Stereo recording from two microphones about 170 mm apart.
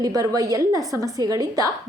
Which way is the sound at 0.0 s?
20° right (ahead or behind).